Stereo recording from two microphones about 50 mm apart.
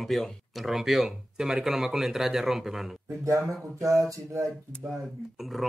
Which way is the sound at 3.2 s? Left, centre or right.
Right.